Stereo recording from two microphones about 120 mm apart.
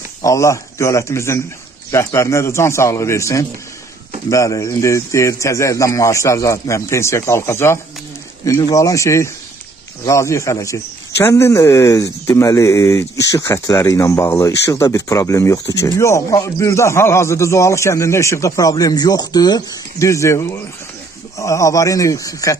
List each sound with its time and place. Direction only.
0.2 s speech: 25° left (ahead or behind)